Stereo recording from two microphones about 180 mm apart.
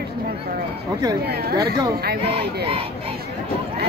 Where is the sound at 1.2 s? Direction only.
60° right (ahead or behind).